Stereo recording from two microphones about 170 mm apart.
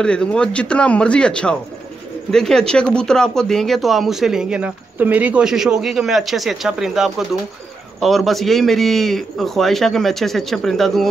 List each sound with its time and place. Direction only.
0.0 s speech: 5° left (ahead or behind)